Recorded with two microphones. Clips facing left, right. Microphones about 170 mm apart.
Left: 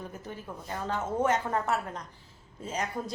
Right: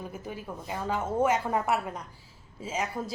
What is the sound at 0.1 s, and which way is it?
Speech, 10° right (ahead or behind).